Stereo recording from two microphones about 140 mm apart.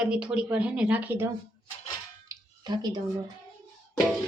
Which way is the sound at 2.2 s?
30° right (ahead or behind).